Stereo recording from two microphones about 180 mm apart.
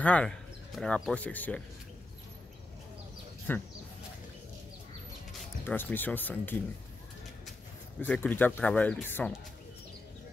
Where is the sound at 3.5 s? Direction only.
10° left (ahead or behind).